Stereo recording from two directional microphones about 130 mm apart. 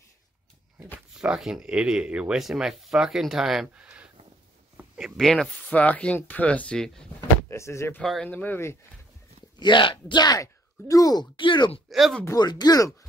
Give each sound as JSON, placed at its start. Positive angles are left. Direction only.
{"t": 1.1, "sound": "speech", "side_deg": -5}
{"t": 4.7, "sound": "a sound", "side_deg": -5}
{"t": 5.1, "sound": "speech", "side_deg": 5}
{"t": 7.2, "sound": "door", "side_deg": 20}
{"t": 8.0, "sound": "speech", "side_deg": 0}
{"t": 8.3, "sound": "speech", "side_deg": 15}
{"t": 9.6, "sound": "speech", "side_deg": 40}
{"t": 11.9, "sound": "speech", "side_deg": 0}
{"t": 12.4, "sound": "speech", "side_deg": 30}